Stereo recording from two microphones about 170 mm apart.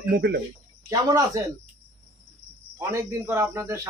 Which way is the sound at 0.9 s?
20° right (ahead or behind).